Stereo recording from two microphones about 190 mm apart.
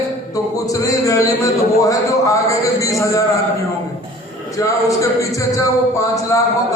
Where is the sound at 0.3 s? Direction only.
20° left (ahead or behind).